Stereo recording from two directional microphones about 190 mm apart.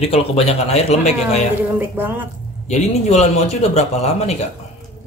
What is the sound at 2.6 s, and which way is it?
Speech, 35° left (ahead or behind).